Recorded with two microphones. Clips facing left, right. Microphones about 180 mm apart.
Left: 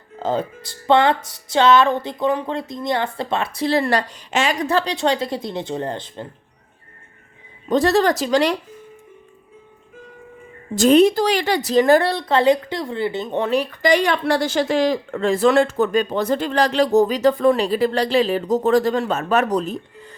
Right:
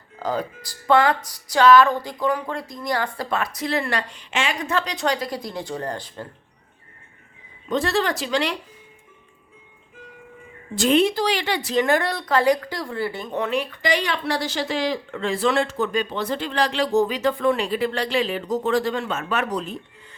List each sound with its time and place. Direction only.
0.2 s speech: 25° left (ahead or behind)
7.7 s speech: 40° left (ahead or behind)
10.8 s speech: 40° left (ahead or behind)